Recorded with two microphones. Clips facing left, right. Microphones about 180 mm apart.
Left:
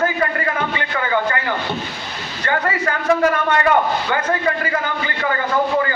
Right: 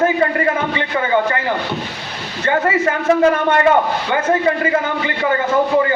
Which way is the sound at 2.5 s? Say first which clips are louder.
Right 4 dB; 25° right (ahead or behind).